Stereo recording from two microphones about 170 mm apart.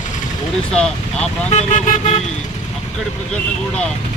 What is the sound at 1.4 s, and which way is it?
Speech, 40° left (ahead or behind).